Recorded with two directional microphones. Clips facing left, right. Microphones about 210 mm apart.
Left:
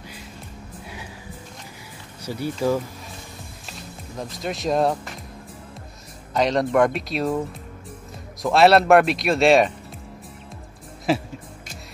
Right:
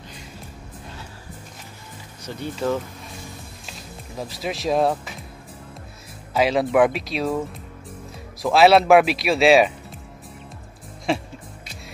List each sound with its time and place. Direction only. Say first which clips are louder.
2.2 s speech: left 2 dB; 10° left (ahead or behind)
4.2 s speech: even; 5° right (ahead or behind)
6.3 s speech: right 1 dB; 5° right (ahead or behind)
11.1 s speech: left 2 dB; 5° left (ahead or behind)